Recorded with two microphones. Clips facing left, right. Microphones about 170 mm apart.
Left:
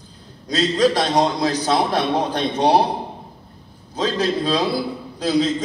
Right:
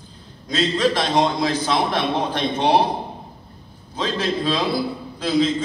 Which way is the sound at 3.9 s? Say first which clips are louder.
Left 3 dB; 40° left (ahead or behind).